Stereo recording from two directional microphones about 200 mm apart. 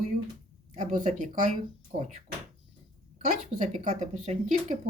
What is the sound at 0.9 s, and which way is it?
Speech, 35° right (ahead or behind).